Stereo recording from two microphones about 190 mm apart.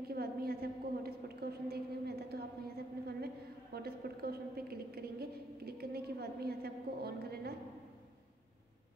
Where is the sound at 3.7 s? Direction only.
55° right (ahead or behind).